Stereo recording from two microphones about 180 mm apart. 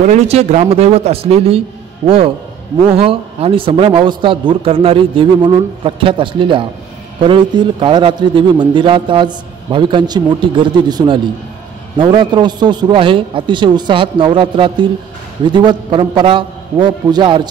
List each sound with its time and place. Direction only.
0.0 s a man's voice: 40° right (ahead or behind)